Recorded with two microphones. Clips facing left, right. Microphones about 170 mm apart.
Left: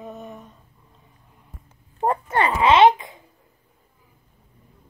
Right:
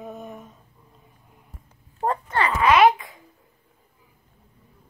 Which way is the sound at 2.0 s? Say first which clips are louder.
Left 3 dB; 25° left (ahead or behind).